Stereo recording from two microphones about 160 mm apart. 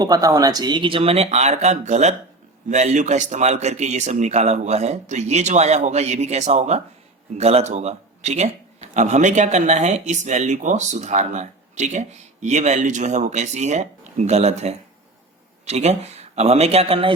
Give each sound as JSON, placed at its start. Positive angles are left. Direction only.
{"t": 0.0, "sound": "a man's voice", "side_deg": -20}